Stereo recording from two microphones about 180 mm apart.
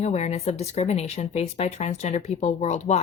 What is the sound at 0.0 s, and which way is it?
A woman's voice, 40° left (ahead or behind).